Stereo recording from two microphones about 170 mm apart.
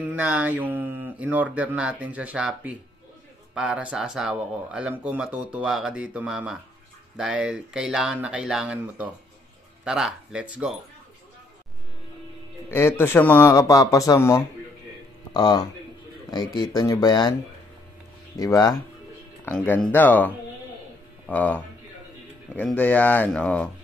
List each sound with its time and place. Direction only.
0.0 s mantra: 10° right (ahead or behind)
1.2 s speech: 10° right (ahead or behind)
12.7 s speech: 15° left (ahead or behind)
18.4 s speech: 20° left (ahead or behind)